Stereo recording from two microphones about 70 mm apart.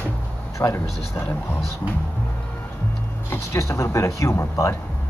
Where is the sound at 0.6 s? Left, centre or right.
Left.